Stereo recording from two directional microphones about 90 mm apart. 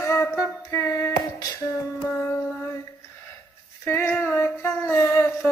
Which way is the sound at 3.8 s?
25° left (ahead or behind).